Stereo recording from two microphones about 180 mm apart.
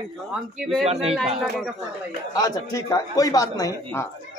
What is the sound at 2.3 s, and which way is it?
A man's voice, 20° left (ahead or behind).